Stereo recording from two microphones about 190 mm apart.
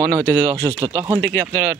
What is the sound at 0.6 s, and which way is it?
Speech, 20° right (ahead or behind).